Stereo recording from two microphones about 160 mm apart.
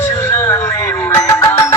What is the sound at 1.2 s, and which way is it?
Music, 20° left (ahead or behind).